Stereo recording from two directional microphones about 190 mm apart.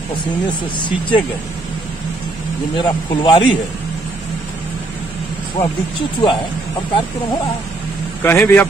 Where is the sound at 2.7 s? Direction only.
25° left (ahead or behind).